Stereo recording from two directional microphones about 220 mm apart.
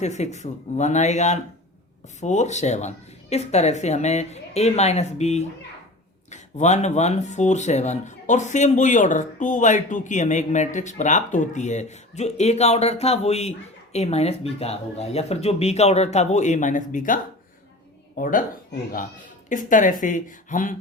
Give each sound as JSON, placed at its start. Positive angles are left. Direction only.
{"t": 0.0, "sound": "speech", "side_deg": 30}
{"t": 18.2, "sound": "speech", "side_deg": 35}